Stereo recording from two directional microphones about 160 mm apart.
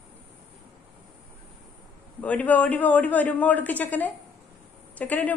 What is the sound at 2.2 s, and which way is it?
Speech, 10° left (ahead or behind).